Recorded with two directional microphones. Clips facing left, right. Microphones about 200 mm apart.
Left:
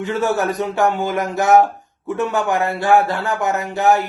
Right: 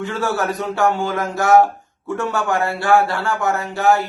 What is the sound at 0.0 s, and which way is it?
Speech, 20° left (ahead or behind).